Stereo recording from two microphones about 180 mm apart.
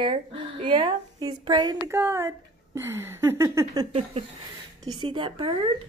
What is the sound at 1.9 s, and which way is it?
A woman's voice, 15° right (ahead or behind).